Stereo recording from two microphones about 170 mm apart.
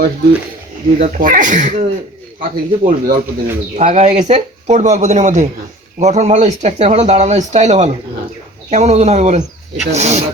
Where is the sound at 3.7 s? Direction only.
45° right (ahead or behind).